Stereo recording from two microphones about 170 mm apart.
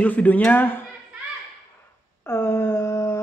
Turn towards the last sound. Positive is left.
turn(degrees=15)  # may be behind; listen again after turning